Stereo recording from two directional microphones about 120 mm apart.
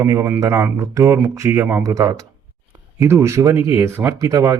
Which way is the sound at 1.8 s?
30° right (ahead or behind).